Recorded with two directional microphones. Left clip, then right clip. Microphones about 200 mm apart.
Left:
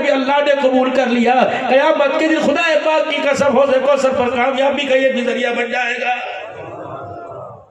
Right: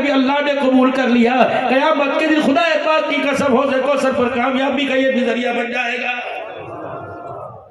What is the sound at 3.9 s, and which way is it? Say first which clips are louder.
Speech: left 2 dB; 20° left (ahead or behind).